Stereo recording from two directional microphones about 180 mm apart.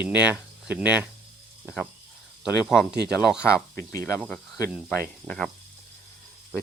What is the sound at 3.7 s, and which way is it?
Speech, 15° left (ahead or behind).